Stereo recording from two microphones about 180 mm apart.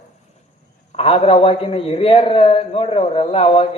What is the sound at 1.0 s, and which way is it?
A man's voice, 30° left (ahead or behind).